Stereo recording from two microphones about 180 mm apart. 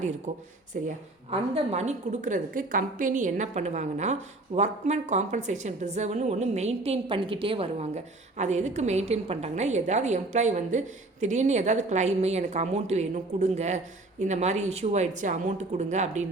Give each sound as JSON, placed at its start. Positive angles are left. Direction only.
{"t": 0.3, "sound": "a woman's voice", "side_deg": -40}
{"t": 1.3, "sound": "a woman's voice", "side_deg": -35}